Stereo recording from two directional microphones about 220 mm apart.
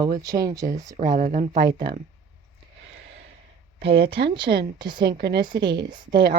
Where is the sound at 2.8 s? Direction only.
60° right (ahead or behind).